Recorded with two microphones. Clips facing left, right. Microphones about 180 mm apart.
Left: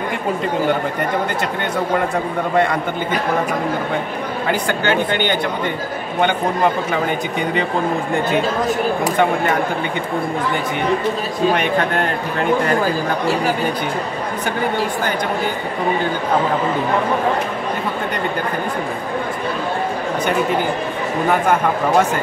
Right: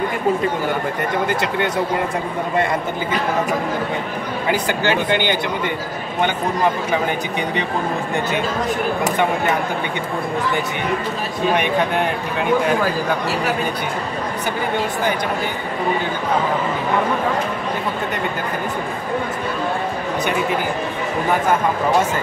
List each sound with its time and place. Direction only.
4.8 s speech: 50° left (ahead or behind)